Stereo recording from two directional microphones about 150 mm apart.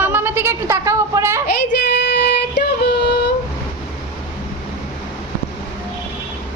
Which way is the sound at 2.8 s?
90° left.